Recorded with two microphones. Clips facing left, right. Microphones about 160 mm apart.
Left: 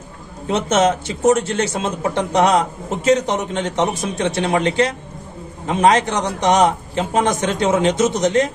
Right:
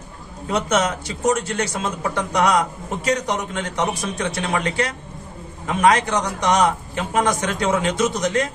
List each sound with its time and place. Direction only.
0.5 s a man's voice: 25° left (ahead or behind)